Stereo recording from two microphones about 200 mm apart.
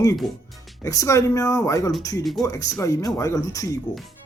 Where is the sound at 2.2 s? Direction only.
Centre (ahead or behind).